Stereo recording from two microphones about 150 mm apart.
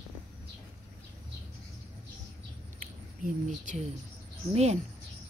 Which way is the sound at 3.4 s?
55° right (ahead or behind).